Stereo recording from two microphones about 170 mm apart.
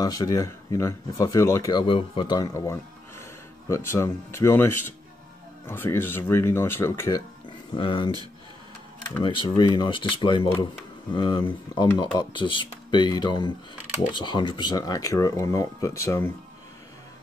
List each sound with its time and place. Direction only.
0.0 s speech: 20° left (ahead or behind)
7.7 s speech: 30° left (ahead or behind)
9.2 s speech: 25° left (ahead or behind)